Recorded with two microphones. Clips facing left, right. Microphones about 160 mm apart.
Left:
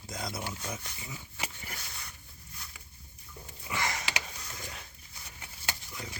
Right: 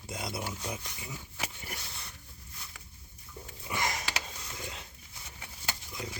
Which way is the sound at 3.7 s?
20° right (ahead or behind).